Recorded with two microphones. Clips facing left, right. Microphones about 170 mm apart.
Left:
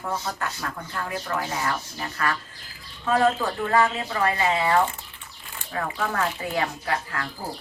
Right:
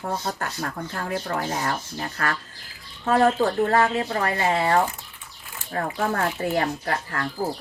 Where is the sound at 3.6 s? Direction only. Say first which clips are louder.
Right 1 dB; 40° right (ahead or behind).